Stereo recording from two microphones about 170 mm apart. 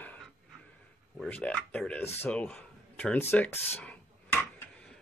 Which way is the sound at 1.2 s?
5° left (ahead or behind).